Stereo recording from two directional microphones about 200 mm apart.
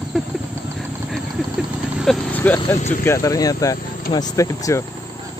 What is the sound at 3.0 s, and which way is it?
Speech, 15° left (ahead or behind).